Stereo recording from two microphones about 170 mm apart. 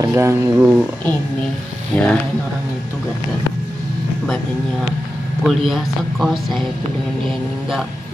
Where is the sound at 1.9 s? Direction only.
5° left (ahead or behind).